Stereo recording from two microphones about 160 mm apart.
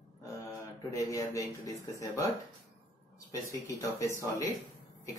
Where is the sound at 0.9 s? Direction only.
20° left (ahead or behind).